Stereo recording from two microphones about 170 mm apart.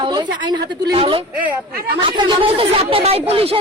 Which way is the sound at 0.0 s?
25° right (ahead or behind).